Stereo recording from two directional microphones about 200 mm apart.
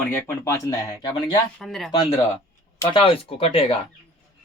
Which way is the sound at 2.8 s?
25° left (ahead or behind).